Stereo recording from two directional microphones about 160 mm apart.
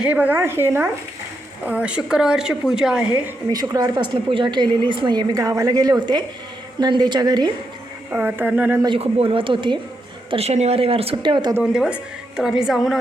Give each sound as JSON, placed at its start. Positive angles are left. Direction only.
{"t": 0.0, "sound": "a woman's voice", "side_deg": -10}
{"t": 3.5, "sound": "a woman's voice", "side_deg": -25}
{"t": 8.1, "sound": "speech", "side_deg": -10}
{"t": 9.0, "sound": "speech", "side_deg": -35}
{"t": 10.3, "sound": "speech", "side_deg": -40}
{"t": 11.5, "sound": "a woman's voice", "side_deg": -5}